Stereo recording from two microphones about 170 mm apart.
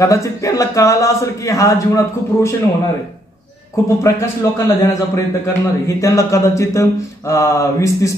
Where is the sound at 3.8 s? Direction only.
20° left (ahead or behind).